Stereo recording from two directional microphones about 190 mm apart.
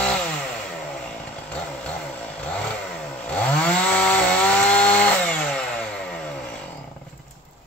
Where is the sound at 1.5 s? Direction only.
5° left (ahead or behind).